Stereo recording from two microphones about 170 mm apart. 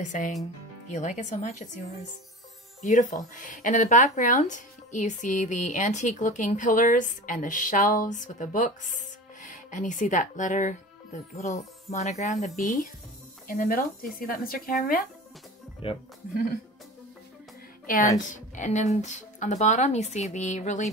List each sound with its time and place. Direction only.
0.0 s speech: 45° left (ahead or behind)
2.8 s speech: 50° left (ahead or behind)
15.8 s speech: 35° left (ahead or behind)
18.3 s speech: 45° left (ahead or behind)